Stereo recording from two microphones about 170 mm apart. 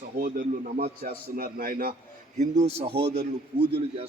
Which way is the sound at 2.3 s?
40° right (ahead or behind).